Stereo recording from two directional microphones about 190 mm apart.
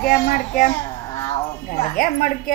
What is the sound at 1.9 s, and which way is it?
Speech, 50° left (ahead or behind).